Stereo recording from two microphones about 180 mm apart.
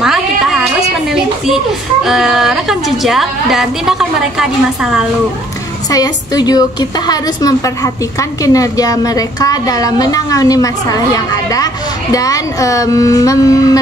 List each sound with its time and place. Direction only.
0.0 s a sound: centre (ahead or behind)
2.0 s a woman's voice: centre (ahead or behind)
5.9 s a woman's voice: 20° left (ahead or behind)